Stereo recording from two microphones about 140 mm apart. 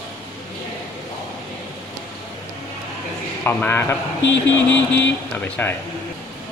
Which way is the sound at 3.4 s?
15° left (ahead or behind).